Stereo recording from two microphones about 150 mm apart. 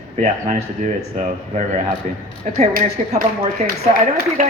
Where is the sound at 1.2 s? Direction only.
55° right (ahead or behind).